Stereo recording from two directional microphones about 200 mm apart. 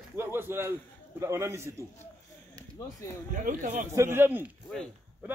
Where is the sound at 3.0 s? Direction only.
15° left (ahead or behind).